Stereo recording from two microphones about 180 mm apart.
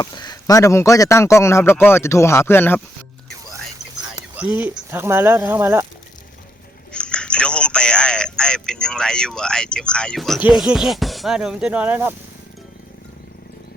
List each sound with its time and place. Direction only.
0.0 s speech: 25° left (ahead or behind)
4.4 s speech: 10° right (ahead or behind)
6.9 s speech: 5° left (ahead or behind)